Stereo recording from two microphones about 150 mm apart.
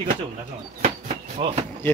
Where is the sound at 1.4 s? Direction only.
35° right (ahead or behind).